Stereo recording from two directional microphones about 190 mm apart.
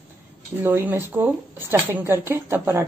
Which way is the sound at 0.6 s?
10° right (ahead or behind).